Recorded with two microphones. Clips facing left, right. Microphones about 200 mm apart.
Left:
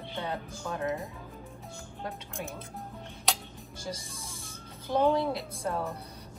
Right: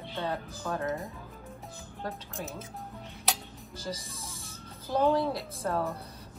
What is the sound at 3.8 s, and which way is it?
A woman's voice, centre (ahead or behind).